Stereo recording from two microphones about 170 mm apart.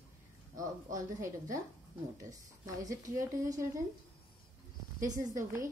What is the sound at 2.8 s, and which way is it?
Speech, 20° right (ahead or behind).